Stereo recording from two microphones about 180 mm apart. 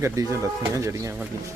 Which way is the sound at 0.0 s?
15° right (ahead or behind).